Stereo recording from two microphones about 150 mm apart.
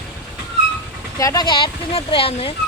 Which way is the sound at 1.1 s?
20° left (ahead or behind).